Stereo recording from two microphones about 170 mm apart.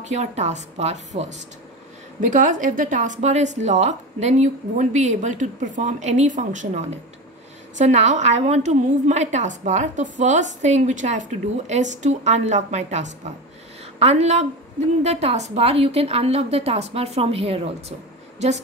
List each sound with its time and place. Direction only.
0.0 s speech: 40° right (ahead or behind)
2.3 s a woman's voice: 50° right (ahead or behind)